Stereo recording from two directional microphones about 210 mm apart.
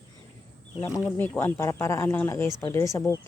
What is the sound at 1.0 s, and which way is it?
Speech, 10° left (ahead or behind).